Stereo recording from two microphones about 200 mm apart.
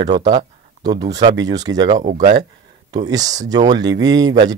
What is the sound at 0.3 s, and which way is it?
Speech, 20° right (ahead or behind).